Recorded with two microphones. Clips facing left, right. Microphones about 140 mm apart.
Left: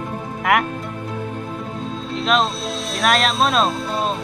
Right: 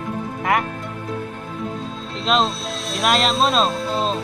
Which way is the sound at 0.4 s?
25° right (ahead or behind).